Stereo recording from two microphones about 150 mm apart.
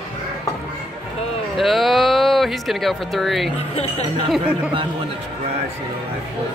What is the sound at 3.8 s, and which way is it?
Speech, 45° left (ahead or behind).